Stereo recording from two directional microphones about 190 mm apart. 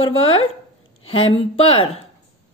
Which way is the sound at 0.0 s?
30° left (ahead or behind).